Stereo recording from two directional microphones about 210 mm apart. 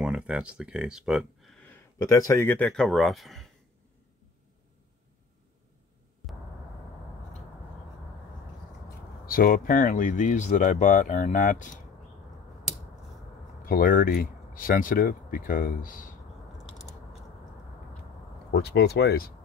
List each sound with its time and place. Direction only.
0.0 s speech: 5° right (ahead or behind)
9.2 s speech: 45° left (ahead or behind)
13.7 s speech: 45° left (ahead or behind)
18.5 s speech: 50° left (ahead or behind)